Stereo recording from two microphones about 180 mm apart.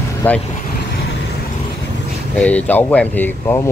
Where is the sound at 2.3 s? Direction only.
10° left (ahead or behind).